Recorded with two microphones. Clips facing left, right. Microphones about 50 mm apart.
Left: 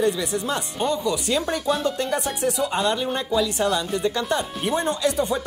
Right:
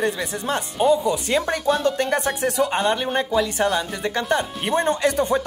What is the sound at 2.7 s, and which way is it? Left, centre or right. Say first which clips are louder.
A woman's voice: right 2 dB; right.